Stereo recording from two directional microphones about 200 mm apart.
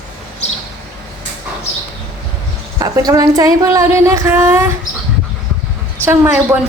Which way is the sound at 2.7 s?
20° right (ahead or behind).